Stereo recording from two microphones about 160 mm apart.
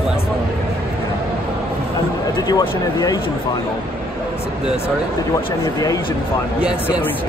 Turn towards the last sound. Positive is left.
turn(degrees=25)  # may be behind; listen again after turning